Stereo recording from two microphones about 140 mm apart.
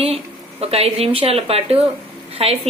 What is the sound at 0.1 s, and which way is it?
Speech, 45° right (ahead or behind).